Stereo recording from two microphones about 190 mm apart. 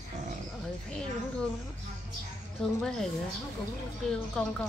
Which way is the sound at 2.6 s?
5° left (ahead or behind).